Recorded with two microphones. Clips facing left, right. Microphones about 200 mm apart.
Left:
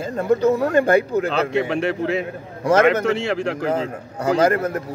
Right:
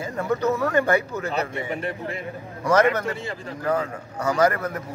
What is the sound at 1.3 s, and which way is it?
A man's voice, 85° left.